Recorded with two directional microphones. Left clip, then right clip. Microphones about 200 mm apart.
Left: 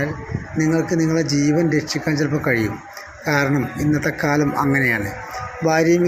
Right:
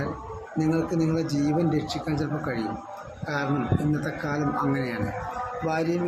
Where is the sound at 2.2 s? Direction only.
25° left (ahead or behind).